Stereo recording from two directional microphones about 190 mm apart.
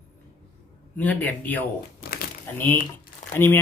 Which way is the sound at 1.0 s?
10° left (ahead or behind).